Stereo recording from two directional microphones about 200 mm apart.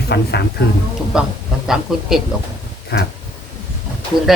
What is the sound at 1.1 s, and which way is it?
Speech, centre (ahead or behind).